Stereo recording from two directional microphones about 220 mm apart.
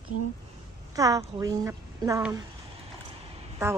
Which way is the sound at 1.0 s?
15° right (ahead or behind).